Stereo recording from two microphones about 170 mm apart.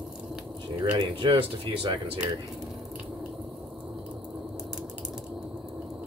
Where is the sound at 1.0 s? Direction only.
30° right (ahead or behind).